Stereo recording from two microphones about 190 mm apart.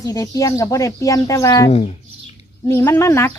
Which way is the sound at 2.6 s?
15° left (ahead or behind).